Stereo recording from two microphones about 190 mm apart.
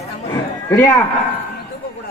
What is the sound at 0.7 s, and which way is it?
Speech, 10° left (ahead or behind).